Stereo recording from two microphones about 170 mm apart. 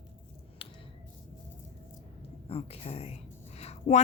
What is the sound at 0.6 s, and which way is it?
Finger snapping, 30° left (ahead or behind).